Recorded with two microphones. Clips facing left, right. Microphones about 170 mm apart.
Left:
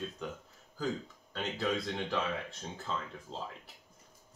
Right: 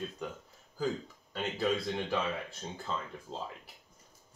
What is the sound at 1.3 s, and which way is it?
Speech, 5° right (ahead or behind).